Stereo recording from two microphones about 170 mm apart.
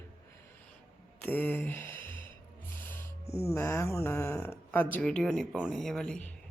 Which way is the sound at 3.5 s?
15° left (ahead or behind).